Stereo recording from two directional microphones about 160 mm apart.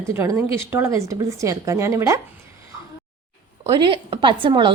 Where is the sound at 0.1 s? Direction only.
20° right (ahead or behind).